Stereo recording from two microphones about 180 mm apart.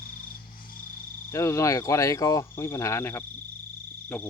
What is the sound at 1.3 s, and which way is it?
Speech, 15° left (ahead or behind).